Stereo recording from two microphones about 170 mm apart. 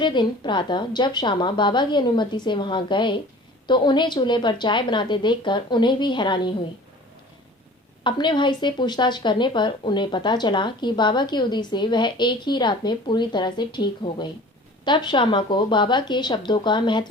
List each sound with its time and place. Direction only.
0.0 s a woman's voice: 25° left (ahead or behind)
8.0 s a woman's voice: 25° left (ahead or behind)